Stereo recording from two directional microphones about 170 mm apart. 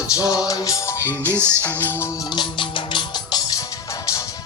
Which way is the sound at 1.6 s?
10° left (ahead or behind).